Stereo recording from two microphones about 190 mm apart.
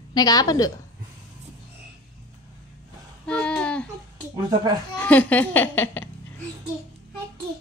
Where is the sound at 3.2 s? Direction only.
5° left (ahead or behind).